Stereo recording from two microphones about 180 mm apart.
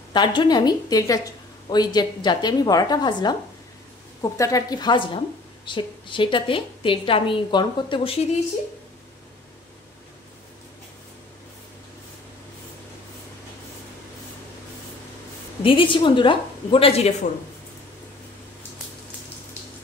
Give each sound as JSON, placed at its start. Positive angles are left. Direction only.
{"t": 0.1, "sound": "a woman's voice", "side_deg": 25}
{"t": 15.6, "sound": "a woman's voice", "side_deg": 30}